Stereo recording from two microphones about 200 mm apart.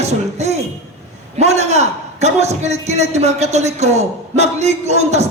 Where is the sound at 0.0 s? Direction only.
35° right (ahead or behind).